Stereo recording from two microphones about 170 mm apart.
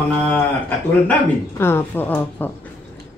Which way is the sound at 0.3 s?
10° left (ahead or behind).